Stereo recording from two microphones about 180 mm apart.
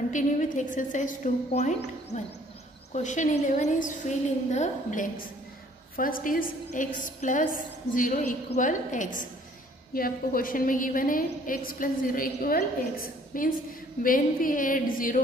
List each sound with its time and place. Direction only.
0.1 s a woman's voice: 45° left (ahead or behind)
2.9 s a woman's voice: 40° left (ahead or behind)